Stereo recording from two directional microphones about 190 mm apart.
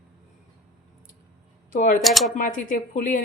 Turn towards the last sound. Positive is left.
turn(degrees=45)  # may be behind; listen again after turning